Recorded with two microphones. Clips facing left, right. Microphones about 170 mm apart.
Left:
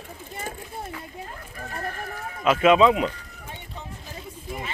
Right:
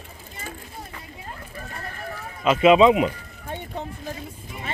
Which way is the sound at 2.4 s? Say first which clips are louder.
Right 2 dB; 5° right (ahead or behind).